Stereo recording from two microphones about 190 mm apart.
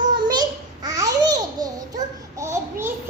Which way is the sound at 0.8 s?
20° right (ahead or behind).